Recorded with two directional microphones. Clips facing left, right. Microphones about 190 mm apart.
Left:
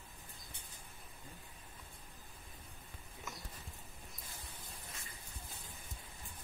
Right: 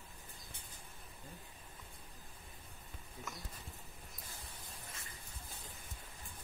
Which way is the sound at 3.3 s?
Centre (ahead or behind).